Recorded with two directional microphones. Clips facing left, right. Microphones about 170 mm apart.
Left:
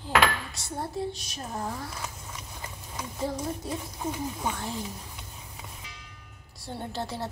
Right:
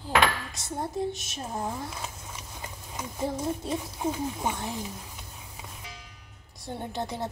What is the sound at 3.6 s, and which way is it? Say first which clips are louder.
Speech: right 3 dB; 20° right (ahead or behind).